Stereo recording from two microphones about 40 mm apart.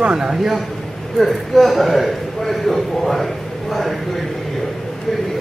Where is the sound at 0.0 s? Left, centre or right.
Centre.